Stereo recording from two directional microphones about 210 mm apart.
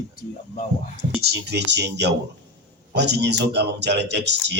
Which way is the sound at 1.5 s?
55° right (ahead or behind).